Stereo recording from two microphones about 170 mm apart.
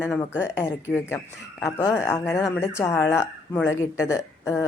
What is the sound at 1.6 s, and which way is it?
A woman's voice, 15° left (ahead or behind).